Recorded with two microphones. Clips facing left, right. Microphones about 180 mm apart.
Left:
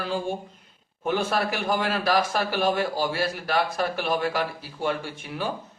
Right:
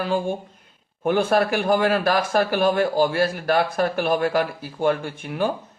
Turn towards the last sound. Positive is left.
turn(degrees=-55)  # may be behind; listen again after turning